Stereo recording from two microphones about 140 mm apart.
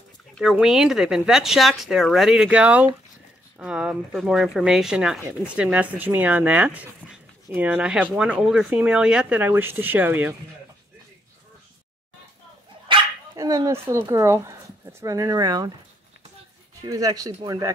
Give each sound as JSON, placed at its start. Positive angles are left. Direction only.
{"t": 0.4, "sound": "speech", "side_deg": -5}
{"t": 12.9, "sound": "dog", "side_deg": -35}
{"t": 13.4, "sound": "speech", "side_deg": -25}
{"t": 16.8, "sound": "speech", "side_deg": -25}